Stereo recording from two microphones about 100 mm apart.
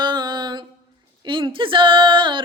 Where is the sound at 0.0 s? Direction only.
50° right (ahead or behind).